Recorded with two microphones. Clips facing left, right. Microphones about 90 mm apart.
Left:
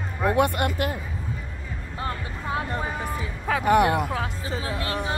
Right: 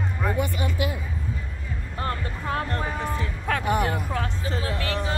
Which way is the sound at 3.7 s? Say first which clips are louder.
Left 7 dB; 80° left.